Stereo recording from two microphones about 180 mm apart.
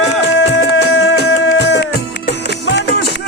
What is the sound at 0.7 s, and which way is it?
Music, 90° left.